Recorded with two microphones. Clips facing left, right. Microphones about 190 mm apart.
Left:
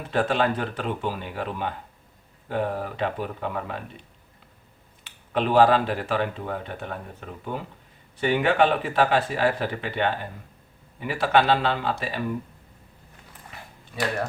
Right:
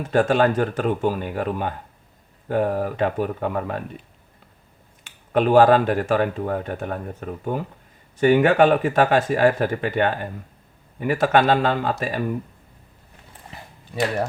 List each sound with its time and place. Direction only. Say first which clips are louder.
0.0 s speech: right 5 dB; 45° right (ahead or behind)
5.0 s speech: right 6 dB; 45° right (ahead or behind)